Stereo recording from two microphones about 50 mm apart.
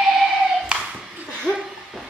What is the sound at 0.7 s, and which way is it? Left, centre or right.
Hands, centre.